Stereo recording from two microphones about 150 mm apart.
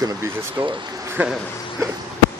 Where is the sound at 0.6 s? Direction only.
35° right (ahead or behind).